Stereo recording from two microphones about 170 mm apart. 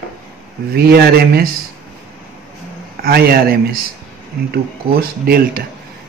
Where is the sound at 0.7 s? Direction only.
65° right (ahead or behind).